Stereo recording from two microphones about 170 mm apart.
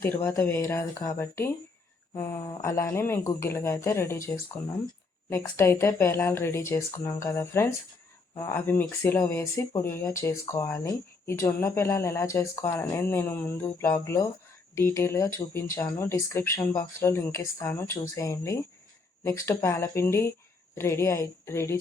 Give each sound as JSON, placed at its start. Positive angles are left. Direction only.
{"t": 0.0, "sound": "speech", "side_deg": 10}